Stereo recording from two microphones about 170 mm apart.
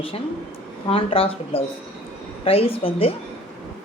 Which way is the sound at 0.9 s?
35° left (ahead or behind).